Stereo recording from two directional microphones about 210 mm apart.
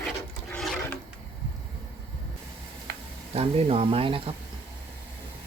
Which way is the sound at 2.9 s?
50° right (ahead or behind).